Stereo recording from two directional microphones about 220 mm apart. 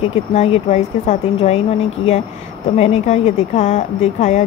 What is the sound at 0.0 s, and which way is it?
A woman's voice, 30° left (ahead or behind).